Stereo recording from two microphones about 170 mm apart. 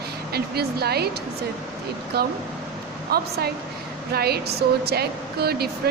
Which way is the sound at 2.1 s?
70° right (ahead or behind).